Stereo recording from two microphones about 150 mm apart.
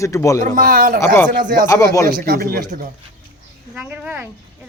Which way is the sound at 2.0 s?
85° right.